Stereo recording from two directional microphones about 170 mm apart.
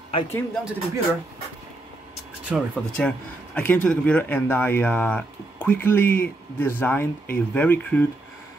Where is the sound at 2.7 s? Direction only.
5° left (ahead or behind).